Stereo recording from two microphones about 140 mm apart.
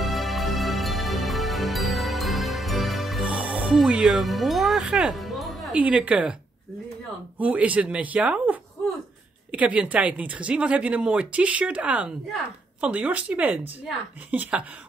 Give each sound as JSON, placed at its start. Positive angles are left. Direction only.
{"t": 0.0, "sound": "music", "side_deg": 0}
{"t": 5.8, "sound": "speech", "side_deg": -10}
{"t": 7.3, "sound": "speech", "side_deg": -10}